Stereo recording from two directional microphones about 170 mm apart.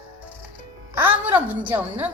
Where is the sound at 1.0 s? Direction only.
10° right (ahead or behind).